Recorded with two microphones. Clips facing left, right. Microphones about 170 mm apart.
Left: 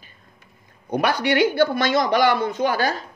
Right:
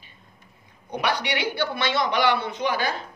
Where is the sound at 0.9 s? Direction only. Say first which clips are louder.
Left 5 dB; 45° left (ahead or behind).